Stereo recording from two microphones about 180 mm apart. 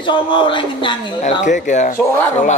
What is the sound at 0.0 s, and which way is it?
Speech, 25° left (ahead or behind).